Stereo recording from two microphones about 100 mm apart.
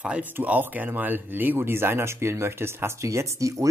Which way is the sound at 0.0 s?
15° right (ahead or behind).